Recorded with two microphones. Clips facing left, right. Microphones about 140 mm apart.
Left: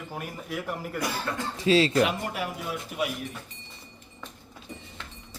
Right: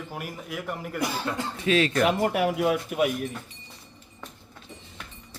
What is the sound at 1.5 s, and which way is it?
Speech, 30° left (ahead or behind).